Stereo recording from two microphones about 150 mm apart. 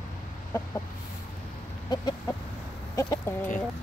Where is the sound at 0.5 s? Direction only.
25° left (ahead or behind).